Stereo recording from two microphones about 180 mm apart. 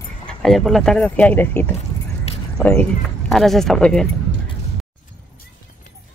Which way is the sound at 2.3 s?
35° left (ahead or behind).